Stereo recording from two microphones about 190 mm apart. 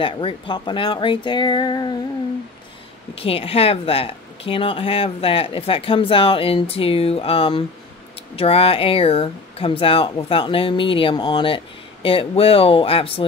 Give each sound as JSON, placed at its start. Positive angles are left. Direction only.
{"t": 0.0, "sound": "speech", "side_deg": 25}
{"t": 3.2, "sound": "speech", "side_deg": 30}